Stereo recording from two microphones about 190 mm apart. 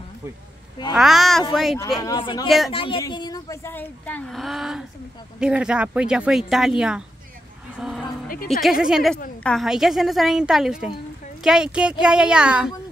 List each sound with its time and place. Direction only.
0.9 s speech: centre (ahead or behind)
2.0 s speech: 20° left (ahead or behind); by 7.1 s 5° right (ahead or behind)
7.7 s a sound: centre (ahead or behind)
8.5 s speech: centre (ahead or behind)